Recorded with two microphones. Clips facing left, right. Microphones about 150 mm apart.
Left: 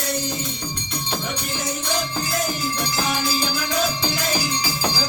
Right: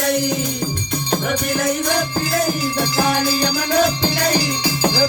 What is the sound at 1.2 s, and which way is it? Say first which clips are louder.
Music: right 8 dB; 75° right (ahead or behind).